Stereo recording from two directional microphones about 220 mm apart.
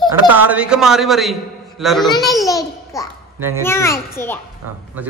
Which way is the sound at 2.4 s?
15° left (ahead or behind).